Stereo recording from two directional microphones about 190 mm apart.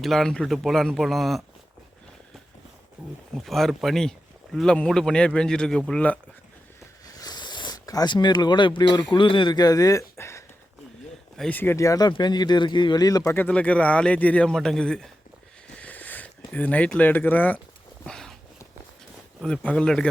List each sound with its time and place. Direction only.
0.0 s a man's voice: centre (ahead or behind)
3.4 s a man's voice: centre (ahead or behind)
7.2 s speech: 20° left (ahead or behind); by 15.1 s 5° left (ahead or behind)
15.6 s a sound: 5° left (ahead or behind)
19.4 s a man's voice: 5° left (ahead or behind)